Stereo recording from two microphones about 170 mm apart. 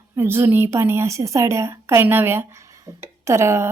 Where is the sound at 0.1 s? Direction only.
15° right (ahead or behind).